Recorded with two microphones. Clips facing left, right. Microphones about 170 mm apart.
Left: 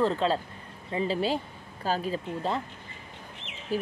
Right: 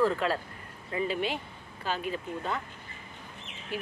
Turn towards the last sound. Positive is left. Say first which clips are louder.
# left 7 dB
turn(degrees=40)  # may be behind; listen again after turning